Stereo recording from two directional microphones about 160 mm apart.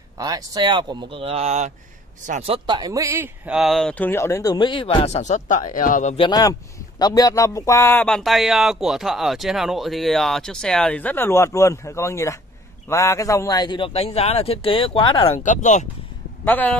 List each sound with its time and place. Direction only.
0.2 s speech: 20° right (ahead or behind)
3.4 s speech: centre (ahead or behind)
4.1 s a man's voice: 15° left (ahead or behind); by 6.1 s 55° left (ahead or behind)
6.1 s a man's voice: 30° left (ahead or behind)
15.3 s speech: 50° left (ahead or behind)
16.4 s speech: 10° left (ahead or behind)